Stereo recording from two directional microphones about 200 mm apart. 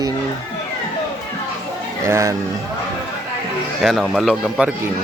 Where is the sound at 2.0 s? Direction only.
15° right (ahead or behind).